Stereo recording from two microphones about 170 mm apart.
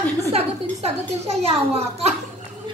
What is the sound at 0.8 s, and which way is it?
A woman's voice, 40° right (ahead or behind).